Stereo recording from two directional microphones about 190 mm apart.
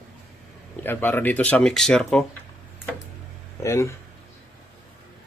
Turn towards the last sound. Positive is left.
turn(degrees=15)  # may be behind; listen again after turning